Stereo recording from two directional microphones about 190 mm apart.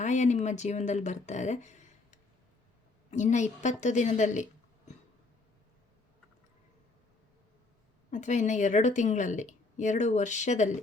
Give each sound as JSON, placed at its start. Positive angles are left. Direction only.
{"t": 0.0, "sound": "a woman's voice", "side_deg": 40}
{"t": 8.1, "sound": "a woman's voice", "side_deg": 40}